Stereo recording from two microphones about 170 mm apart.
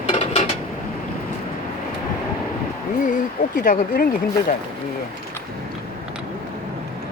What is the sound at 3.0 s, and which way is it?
Speech, 50° left (ahead or behind).